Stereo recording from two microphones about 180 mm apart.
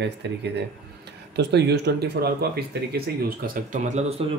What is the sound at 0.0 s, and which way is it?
Speech, 70° right (ahead or behind).